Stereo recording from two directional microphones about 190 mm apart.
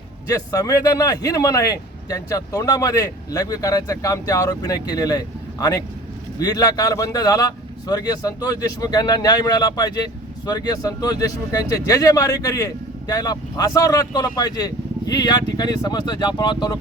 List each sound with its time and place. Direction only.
0.3 s speech: 15° left (ahead or behind)